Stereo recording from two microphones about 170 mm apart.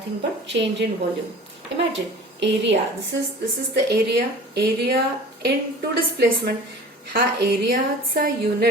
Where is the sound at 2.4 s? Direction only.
90° right.